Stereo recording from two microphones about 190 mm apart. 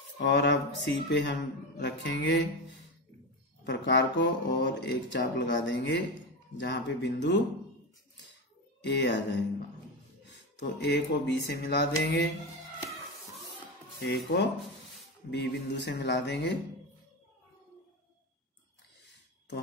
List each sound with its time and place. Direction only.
0.4 s speech: 65° left (ahead or behind)
3.6 s mantra: 65° left (ahead or behind)
8.8 s speech: 65° left (ahead or behind)
10.6 s speech: 65° left (ahead or behind)
14.0 s speech: 60° left (ahead or behind)